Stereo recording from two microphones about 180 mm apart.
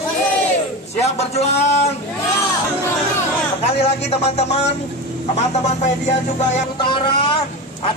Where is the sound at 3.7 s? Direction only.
35° left (ahead or behind).